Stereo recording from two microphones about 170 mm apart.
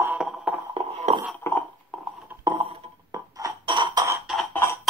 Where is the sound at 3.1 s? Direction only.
20° right (ahead or behind).